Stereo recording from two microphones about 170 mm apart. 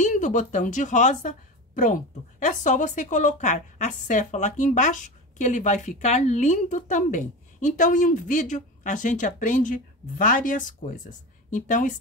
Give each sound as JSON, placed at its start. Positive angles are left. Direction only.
{"t": 0.0, "sound": "a woman's voice", "side_deg": 45}
{"t": 2.4, "sound": "a woman's voice", "side_deg": 45}